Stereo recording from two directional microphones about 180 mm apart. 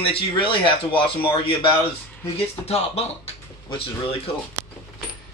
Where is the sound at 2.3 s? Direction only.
35° left (ahead or behind).